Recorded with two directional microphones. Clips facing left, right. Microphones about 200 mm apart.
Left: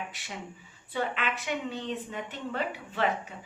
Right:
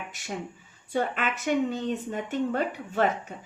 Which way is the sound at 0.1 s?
45° right (ahead or behind).